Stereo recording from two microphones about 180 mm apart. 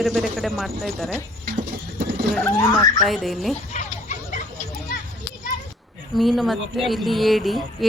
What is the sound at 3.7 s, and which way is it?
Chicken, 40° left (ahead or behind).